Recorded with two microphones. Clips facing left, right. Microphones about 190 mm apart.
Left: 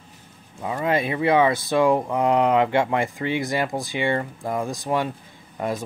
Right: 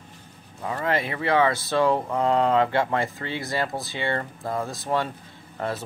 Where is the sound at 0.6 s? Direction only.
15° left (ahead or behind).